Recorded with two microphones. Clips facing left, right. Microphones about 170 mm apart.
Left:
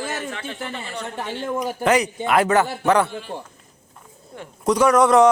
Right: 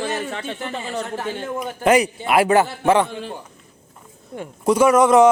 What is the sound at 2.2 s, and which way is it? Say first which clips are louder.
Speech: right 1 dB; 15° right (ahead or behind).